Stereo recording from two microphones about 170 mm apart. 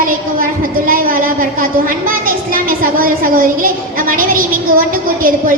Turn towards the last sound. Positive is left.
turn(degrees=-55)  # may be behind; listen again after turning